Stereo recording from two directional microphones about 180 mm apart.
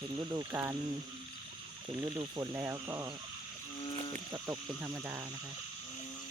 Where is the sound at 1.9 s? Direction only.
15° right (ahead or behind).